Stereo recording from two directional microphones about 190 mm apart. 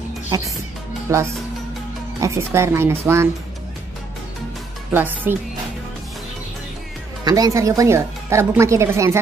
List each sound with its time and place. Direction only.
0.3 s speech: 15° right (ahead or behind)
4.9 s speech: 10° right (ahead or behind)
7.2 s speech: 20° right (ahead or behind)